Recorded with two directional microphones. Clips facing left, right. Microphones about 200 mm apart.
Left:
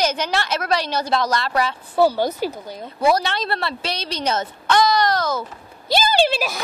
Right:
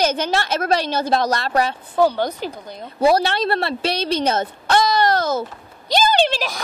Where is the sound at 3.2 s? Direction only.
55° right (ahead or behind).